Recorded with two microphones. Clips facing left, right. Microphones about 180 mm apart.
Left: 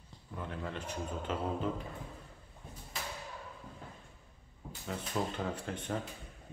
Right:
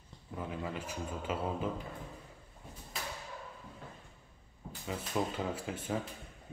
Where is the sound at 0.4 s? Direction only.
5° right (ahead or behind).